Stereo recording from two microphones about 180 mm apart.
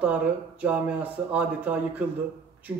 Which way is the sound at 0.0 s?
10° right (ahead or behind).